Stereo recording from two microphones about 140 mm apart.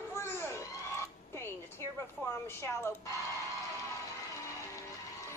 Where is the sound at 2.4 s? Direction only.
15° left (ahead or behind).